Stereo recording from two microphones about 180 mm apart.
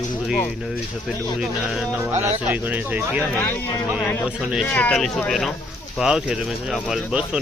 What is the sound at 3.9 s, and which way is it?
Speech, centre (ahead or behind).